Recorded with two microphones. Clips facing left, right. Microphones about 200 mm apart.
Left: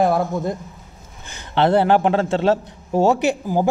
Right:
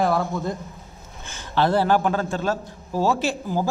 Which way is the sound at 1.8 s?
25° left (ahead or behind).